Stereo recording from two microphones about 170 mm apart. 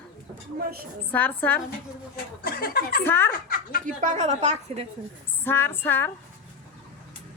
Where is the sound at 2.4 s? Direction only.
65° left (ahead or behind).